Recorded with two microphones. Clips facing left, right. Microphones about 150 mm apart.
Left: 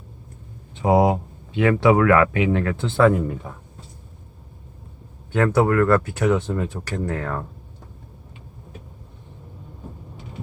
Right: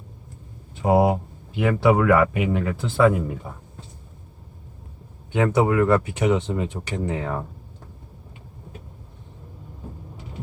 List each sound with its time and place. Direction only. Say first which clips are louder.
0.9 s speech: left 1 dB; 5° right (ahead or behind)
5.5 s speech: left 1 dB; 15° right (ahead or behind)